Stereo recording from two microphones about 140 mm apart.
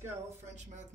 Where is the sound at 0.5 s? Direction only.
55° right (ahead or behind).